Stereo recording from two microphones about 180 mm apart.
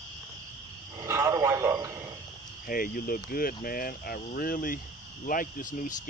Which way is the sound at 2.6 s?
55° left (ahead or behind).